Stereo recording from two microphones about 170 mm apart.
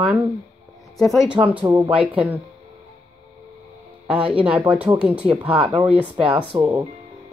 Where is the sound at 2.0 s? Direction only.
10° right (ahead or behind).